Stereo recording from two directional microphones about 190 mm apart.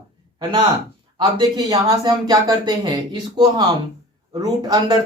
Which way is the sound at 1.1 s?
25° right (ahead or behind).